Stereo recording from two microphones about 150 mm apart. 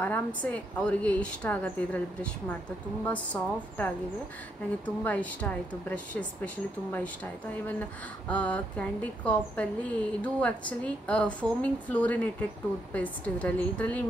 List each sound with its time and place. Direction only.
0.4 s a woman's voice: 10° left (ahead or behind)
3.1 s a woman's voice: 10° left (ahead or behind)
8.3 s a woman's voice: 10° left (ahead or behind)